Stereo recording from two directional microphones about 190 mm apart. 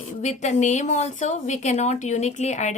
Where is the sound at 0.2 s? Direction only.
40° left (ahead or behind).